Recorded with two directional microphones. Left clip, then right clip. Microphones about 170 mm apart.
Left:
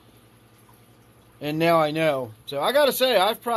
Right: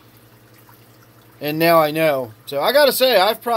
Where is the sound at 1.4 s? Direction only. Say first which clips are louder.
Right 6 dB; 10° right (ahead or behind).